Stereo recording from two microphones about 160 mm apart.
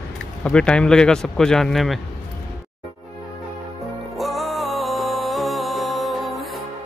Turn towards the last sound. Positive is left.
turn(degrees=0)  # may be behind; listen again after turning